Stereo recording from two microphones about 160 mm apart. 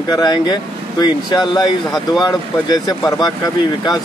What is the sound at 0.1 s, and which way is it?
Speech, 25° left (ahead or behind).